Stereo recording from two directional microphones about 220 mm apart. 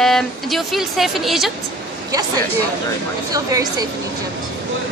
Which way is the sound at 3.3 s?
15° right (ahead or behind).